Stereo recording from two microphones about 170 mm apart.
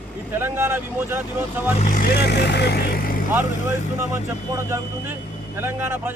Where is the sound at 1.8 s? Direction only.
60° left (ahead or behind); by 2.8 s 75° left (ahead or behind).